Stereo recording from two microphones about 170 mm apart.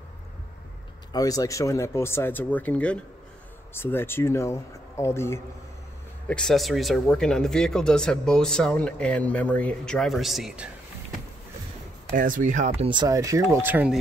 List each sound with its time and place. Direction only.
1.1 s speech: 20° left (ahead or behind)
6.2 s speech: 5° left (ahead or behind)
12.2 s speech: 50° right (ahead or behind); by 13.9 s 10° right (ahead or behind)